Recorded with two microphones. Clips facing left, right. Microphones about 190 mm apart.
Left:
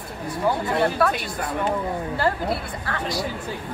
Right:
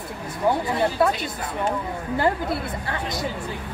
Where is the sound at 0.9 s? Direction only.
25° right (ahead or behind).